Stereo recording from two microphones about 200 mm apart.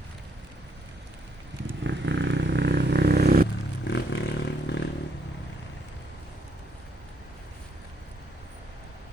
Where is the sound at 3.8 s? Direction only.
60° left (ahead or behind).